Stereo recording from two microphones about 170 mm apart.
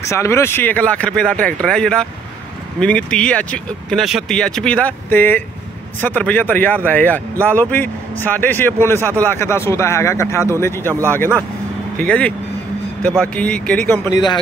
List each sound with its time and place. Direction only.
0.1 s speech: 15° left (ahead or behind)